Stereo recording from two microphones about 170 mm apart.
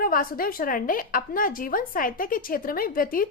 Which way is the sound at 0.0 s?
55° left (ahead or behind).